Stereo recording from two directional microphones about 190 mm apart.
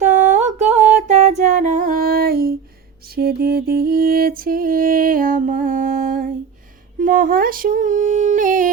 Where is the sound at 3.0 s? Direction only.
55° right (ahead or behind).